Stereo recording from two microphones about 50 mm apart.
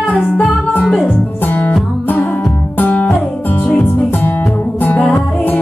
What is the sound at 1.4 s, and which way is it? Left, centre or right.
Music, left.